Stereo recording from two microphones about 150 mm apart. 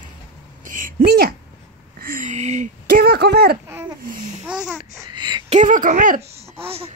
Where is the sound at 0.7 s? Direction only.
65° right (ahead or behind); by 1.3 s 90° right.